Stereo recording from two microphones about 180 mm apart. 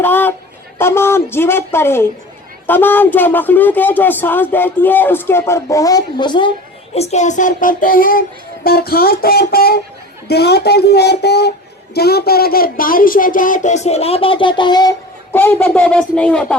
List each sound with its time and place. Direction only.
0.0 s a sound: 10° left (ahead or behind)
0.8 s speech: 15° left (ahead or behind)
6.9 s speech: 35° left (ahead or behind)
15.3 s speech: 10° left (ahead or behind)